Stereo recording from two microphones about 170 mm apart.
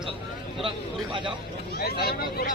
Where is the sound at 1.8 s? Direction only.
65° left (ahead or behind).